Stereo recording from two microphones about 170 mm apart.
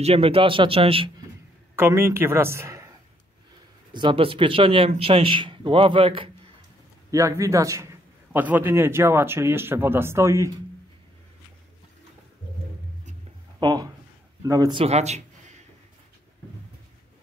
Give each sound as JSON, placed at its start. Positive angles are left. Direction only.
{"t": 0.0, "sound": "speech", "side_deg": -35}
{"t": 1.8, "sound": "a man's voice", "side_deg": -15}
{"t": 3.9, "sound": "speech", "side_deg": -30}
{"t": 7.1, "sound": "a man's voice", "side_deg": -20}
{"t": 13.6, "sound": "speech", "side_deg": -25}
{"t": 14.8, "sound": "speech", "side_deg": -40}